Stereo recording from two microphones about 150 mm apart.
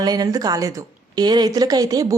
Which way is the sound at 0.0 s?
25° right (ahead or behind).